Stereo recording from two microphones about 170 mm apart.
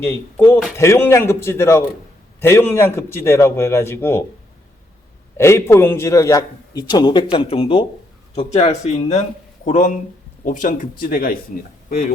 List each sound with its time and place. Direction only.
0.0 s a man's voice: 15° left (ahead or behind)
5.4 s a man's voice: 15° left (ahead or behind); by 11.3 s 60° left (ahead or behind)